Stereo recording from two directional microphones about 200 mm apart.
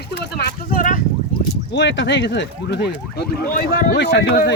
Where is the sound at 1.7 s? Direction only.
65° left (ahead or behind).